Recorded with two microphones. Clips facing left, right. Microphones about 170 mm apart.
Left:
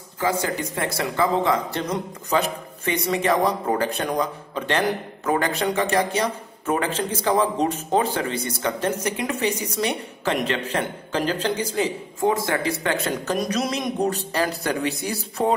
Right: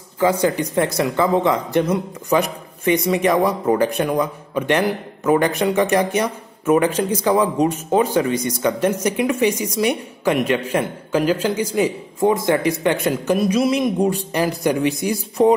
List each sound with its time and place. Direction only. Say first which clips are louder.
0.2 s speech: right 6 dB; 20° right (ahead or behind)
13.4 s speech: right 7 dB; 5° right (ahead or behind)